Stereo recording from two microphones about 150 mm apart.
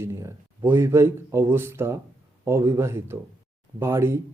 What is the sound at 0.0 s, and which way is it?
Speech, 20° right (ahead or behind).